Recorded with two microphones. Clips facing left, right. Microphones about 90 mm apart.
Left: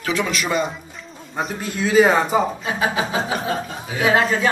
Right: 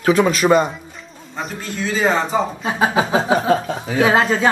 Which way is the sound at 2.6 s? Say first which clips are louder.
Right 4 dB; 30° right (ahead or behind).